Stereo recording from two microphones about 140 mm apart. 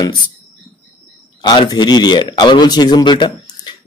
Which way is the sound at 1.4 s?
35° left (ahead or behind).